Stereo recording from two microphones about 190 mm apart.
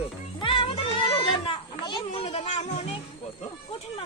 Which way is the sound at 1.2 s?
25° left (ahead or behind).